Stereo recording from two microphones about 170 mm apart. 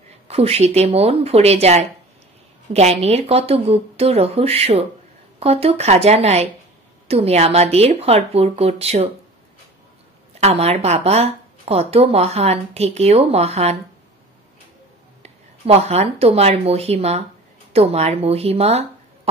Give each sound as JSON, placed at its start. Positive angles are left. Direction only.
{"t": 0.3, "sound": "a woman's voice", "side_deg": -35}
{"t": 10.4, "sound": "a woman's voice", "side_deg": -40}
{"t": 15.2, "sound": "a woman's voice", "side_deg": -40}